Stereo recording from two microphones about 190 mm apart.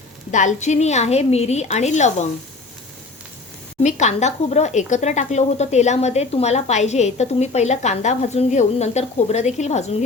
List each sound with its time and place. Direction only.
0.3 s speech: 40° left (ahead or behind)
3.8 s speech: 40° left (ahead or behind)